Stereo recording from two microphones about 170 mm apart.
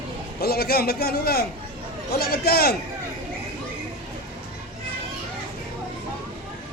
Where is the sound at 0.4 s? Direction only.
65° left (ahead or behind).